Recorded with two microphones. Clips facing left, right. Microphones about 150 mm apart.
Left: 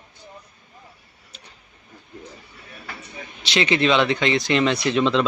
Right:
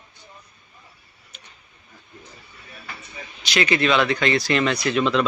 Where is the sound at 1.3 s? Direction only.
30° left (ahead or behind).